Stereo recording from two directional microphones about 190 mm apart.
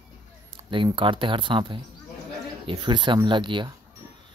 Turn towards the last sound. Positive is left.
turn(degrees=-25)  # may be behind; listen again after turning